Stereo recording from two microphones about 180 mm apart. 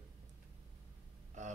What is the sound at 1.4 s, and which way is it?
Speech, 40° right (ahead or behind).